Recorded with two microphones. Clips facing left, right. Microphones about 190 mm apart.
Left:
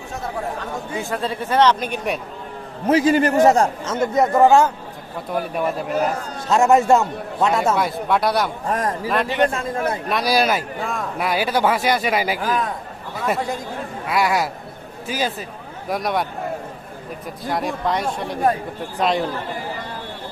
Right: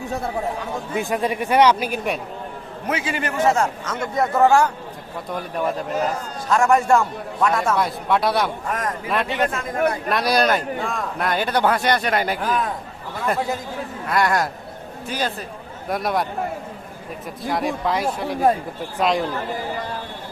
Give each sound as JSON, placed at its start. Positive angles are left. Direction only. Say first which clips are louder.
{"t": 0.6, "sound": "speech", "louder": "right 2 dB", "side_deg": -15}
{"t": 2.8, "sound": "a man's voice", "louder": "left 10 dB", "side_deg": 40}
{"t": 3.9, "sound": "a man's voice", "louder": "left 4 dB", "side_deg": 20}
{"t": 6.5, "sound": "a man's voice", "louder": "left 2 dB", "side_deg": 25}
{"t": 7.8, "sound": "speech", "louder": "left 1 dB", "side_deg": 0}
{"t": 8.6, "sound": "a man's voice", "louder": "left 3 dB", "side_deg": 30}
{"t": 9.0, "sound": "speech", "louder": "left 3 dB", "side_deg": 0}
{"t": 17.4, "sound": "speech", "louder": "even", "side_deg": 0}